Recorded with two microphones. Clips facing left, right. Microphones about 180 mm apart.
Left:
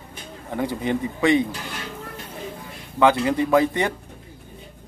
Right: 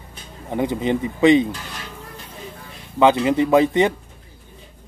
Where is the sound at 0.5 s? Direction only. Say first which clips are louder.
Right 3 dB; 20° right (ahead or behind).